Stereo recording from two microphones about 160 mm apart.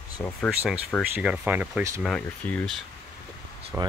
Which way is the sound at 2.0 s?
5° left (ahead or behind).